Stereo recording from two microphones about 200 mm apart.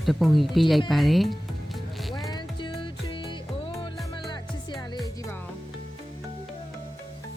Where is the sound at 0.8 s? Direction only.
Centre (ahead or behind).